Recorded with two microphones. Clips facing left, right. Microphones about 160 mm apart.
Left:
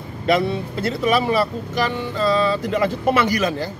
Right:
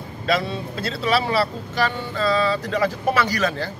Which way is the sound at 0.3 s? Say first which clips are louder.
Left 4 dB; 20° left (ahead or behind).